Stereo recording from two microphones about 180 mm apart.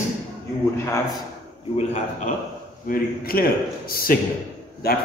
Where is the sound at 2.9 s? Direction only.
55° left (ahead or behind).